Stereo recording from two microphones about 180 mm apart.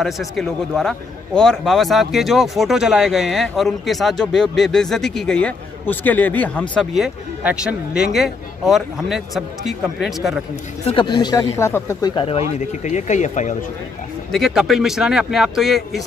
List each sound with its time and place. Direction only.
0.0 s speech: centre (ahead or behind)
10.9 s speech: 25° left (ahead or behind)
12.2 s speech: 35° left (ahead or behind)
14.3 s speech: centre (ahead or behind)